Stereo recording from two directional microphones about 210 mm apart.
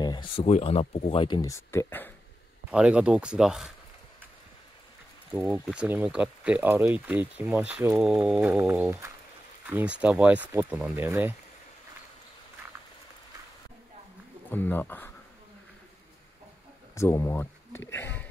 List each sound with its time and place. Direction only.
0.0 s speech: 20° left (ahead or behind)
2.7 s speech: 5° right (ahead or behind)
5.3 s speech: 5° right (ahead or behind)
14.5 s speech: 10° left (ahead or behind)
16.9 s speech: 15° left (ahead or behind)